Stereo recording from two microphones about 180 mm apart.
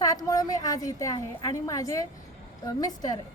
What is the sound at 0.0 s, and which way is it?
A woman's voice, 20° left (ahead or behind).